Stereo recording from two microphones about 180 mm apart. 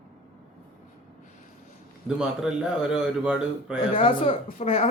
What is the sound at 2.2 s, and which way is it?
A man's voice, 5° right (ahead or behind).